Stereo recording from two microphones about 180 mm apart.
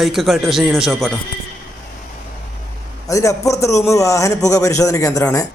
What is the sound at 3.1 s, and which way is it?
A man's voice, 20° left (ahead or behind).